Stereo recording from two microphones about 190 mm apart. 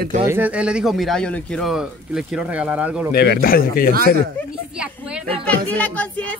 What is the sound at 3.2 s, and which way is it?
Speech, 55° left (ahead or behind).